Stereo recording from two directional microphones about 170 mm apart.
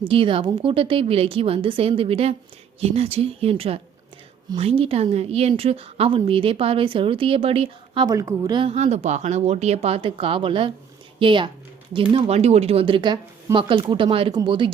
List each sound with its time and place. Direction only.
0.0 s a woman's voice: 30° right (ahead or behind)
8.0 s a woman's voice: 20° right (ahead or behind)